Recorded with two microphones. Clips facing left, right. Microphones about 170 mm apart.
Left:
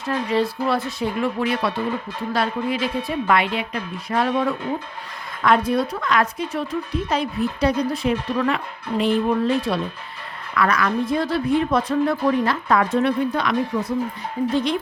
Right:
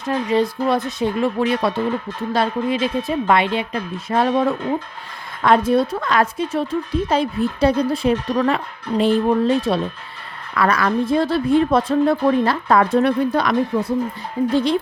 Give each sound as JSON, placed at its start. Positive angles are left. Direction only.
{"t": 0.0, "sound": "a woman's voice", "side_deg": -20}